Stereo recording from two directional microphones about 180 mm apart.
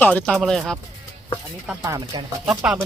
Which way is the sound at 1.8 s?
20° right (ahead or behind).